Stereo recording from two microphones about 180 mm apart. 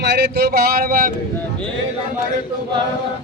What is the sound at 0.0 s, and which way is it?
Speech, 70° right (ahead or behind).